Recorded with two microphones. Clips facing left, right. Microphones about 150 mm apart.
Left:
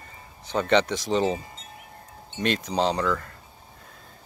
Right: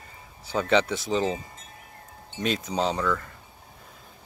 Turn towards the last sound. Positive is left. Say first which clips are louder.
# left 2 dB
turn(degrees=0)  # may be behind; listen again after turning